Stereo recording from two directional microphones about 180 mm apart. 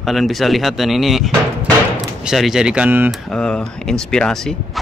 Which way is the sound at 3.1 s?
5° left (ahead or behind).